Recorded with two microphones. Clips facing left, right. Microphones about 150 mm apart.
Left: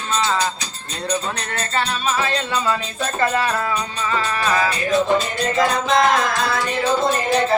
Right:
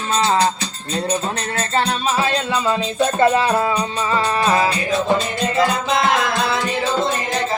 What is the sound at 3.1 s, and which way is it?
Music, 20° right (ahead or behind).